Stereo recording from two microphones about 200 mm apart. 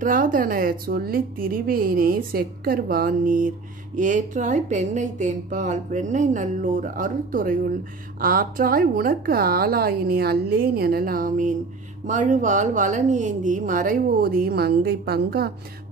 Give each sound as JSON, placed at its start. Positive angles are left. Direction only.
{"t": 0.0, "sound": "a woman's voice", "side_deg": -40}